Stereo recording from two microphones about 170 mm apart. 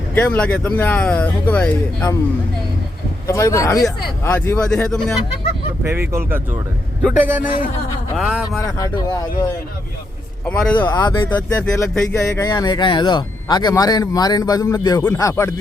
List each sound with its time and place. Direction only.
0.1 s speech: 10° left (ahead or behind)
3.2 s speech: 20° left (ahead or behind)
4.9 s speech: 5° left (ahead or behind)
6.1 s speech: 15° right (ahead or behind)
8.5 s speech: 20° left (ahead or behind)
10.9 s speech: 25° left (ahead or behind)
11.3 s speech: 10° left (ahead or behind)